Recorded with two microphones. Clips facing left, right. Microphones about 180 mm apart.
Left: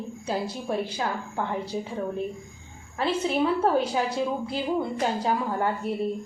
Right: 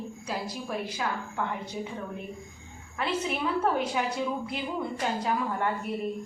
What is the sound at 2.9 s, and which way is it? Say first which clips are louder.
A woman's voice: left 5 dB; 30° left (ahead or behind).